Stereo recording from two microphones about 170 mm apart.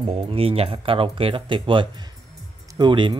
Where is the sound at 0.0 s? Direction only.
30° right (ahead or behind).